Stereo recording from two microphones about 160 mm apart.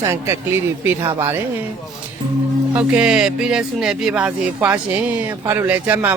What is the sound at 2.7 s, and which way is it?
Speech, 5° right (ahead or behind).